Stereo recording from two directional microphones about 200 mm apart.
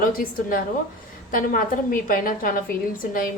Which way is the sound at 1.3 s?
45° left (ahead or behind).